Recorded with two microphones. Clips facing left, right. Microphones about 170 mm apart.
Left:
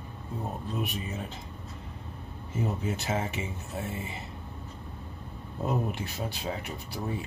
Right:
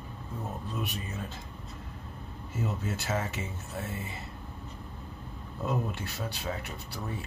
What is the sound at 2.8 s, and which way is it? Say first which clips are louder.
Speech: left 2 dB; 20° left (ahead or behind).